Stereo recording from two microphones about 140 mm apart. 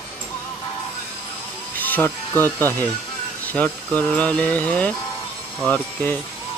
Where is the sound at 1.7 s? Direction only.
10° left (ahead or behind).